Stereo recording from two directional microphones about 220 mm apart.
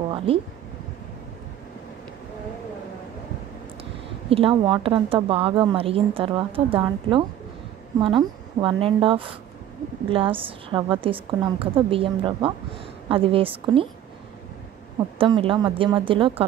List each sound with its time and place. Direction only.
4.3 s speech: 25° right (ahead or behind)
15.1 s speech: 25° right (ahead or behind)